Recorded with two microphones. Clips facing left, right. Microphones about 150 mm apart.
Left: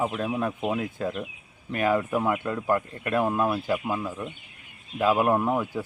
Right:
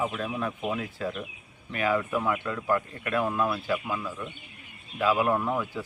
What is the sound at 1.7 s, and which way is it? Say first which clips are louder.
Speech: left 3 dB; 45° left (ahead or behind).